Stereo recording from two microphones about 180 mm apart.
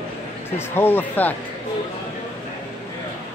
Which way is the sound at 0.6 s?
10° left (ahead or behind).